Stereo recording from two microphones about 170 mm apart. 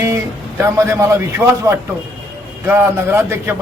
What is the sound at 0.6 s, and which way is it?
A man's voice, 15° right (ahead or behind).